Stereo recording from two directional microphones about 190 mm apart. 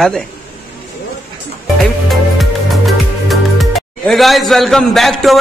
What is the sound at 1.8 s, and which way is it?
Music, centre (ahead or behind).